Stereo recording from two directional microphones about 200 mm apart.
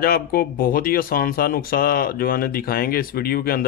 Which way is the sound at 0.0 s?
50° left (ahead or behind).